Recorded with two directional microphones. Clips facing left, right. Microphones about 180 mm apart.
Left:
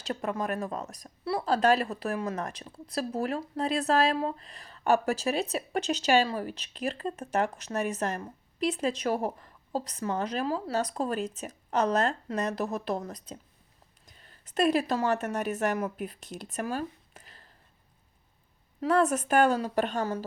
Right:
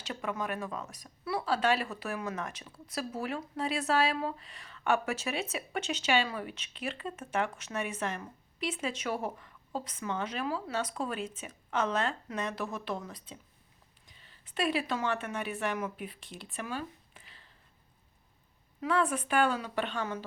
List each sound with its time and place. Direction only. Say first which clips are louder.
0.1 s speech: left 4 dB; 40° left (ahead or behind)
18.8 s speech: left 5 dB; 40° left (ahead or behind)